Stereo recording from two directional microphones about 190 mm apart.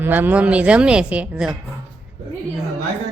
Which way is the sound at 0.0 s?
10° right (ahead or behind).